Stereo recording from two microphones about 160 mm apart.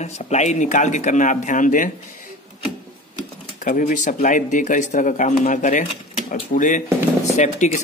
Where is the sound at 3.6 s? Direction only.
50° left (ahead or behind).